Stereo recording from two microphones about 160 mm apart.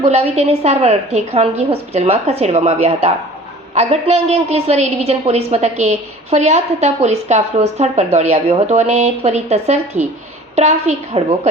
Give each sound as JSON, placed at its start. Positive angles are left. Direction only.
{"t": 0.0, "sound": "a woman's voice", "side_deg": -40}